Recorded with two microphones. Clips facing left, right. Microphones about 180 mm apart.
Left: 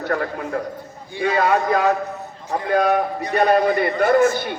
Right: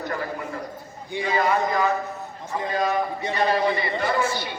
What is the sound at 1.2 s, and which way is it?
A man's voice, 70° left (ahead or behind).